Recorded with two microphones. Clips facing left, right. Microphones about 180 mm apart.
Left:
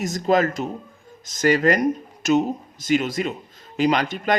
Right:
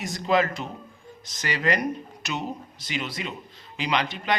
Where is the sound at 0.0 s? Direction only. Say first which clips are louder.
Left 4 dB; 45° left (ahead or behind).